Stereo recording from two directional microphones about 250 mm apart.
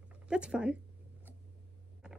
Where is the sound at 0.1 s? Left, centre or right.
Centre.